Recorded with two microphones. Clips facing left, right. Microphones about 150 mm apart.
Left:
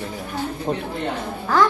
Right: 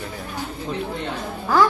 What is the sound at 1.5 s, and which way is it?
Speech, 10° right (ahead or behind).